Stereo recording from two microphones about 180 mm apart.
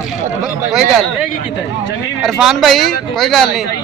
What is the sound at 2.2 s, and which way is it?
Speech, centre (ahead or behind).